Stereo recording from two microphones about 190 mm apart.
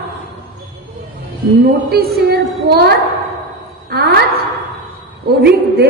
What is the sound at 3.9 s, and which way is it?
Speech, 55° right (ahead or behind).